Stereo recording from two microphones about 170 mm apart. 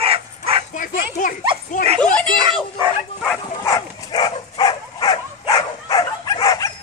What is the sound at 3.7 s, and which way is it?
Dog, 20° left (ahead or behind).